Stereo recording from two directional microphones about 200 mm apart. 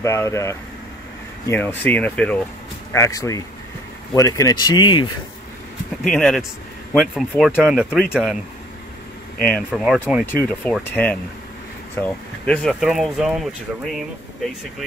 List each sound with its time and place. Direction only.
0.0 s speech: 15° left (ahead or behind)
2.9 s speech: 15° left (ahead or behind)
6.0 s speech: centre (ahead or behind)
9.7 s speech: 5° right (ahead or behind)
10.2 s speech: 10° left (ahead or behind)